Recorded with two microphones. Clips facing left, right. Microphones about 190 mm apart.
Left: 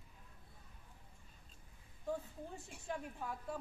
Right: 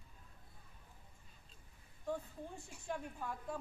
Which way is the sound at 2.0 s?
Centre (ahead or behind).